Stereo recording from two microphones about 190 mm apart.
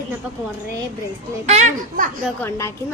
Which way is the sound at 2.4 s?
15° left (ahead or behind).